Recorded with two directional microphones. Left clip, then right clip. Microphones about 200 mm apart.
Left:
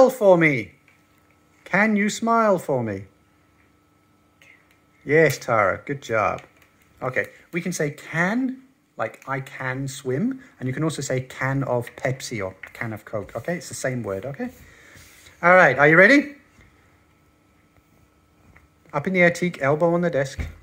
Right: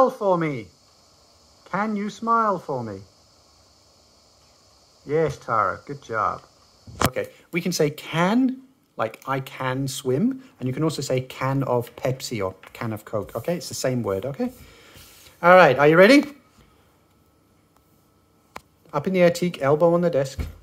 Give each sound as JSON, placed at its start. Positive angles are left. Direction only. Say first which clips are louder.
{"t": 0.0, "sound": "speech", "louder": "left 5 dB", "side_deg": 15}
{"t": 5.0, "sound": "speech", "louder": "left 5 dB", "side_deg": 15}
{"t": 7.5, "sound": "speech", "louder": "right 3 dB", "side_deg": -20}
{"t": 18.9, "sound": "speech", "louder": "even", "side_deg": -10}